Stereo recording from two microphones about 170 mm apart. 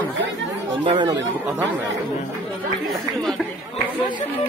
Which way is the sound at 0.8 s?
30° right (ahead or behind).